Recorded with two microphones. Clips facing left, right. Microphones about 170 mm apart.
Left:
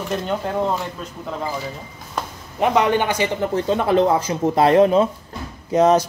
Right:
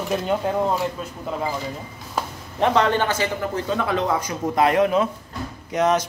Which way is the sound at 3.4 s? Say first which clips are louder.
Left 4 dB; 30° left (ahead or behind).